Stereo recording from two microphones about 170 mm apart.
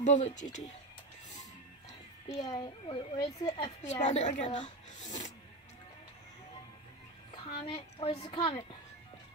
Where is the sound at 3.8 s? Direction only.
45° left (ahead or behind).